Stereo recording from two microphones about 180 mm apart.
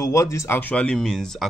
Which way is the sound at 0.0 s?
15° left (ahead or behind).